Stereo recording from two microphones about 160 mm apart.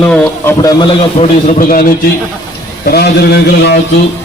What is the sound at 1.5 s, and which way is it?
Speech, 60° left (ahead or behind).